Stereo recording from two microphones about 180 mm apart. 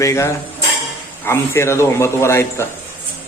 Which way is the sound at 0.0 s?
15° left (ahead or behind).